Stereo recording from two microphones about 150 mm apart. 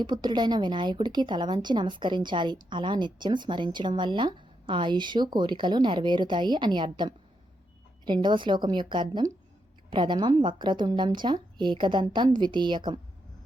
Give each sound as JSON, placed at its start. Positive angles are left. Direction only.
{"t": 0.0, "sound": "speech", "side_deg": -30}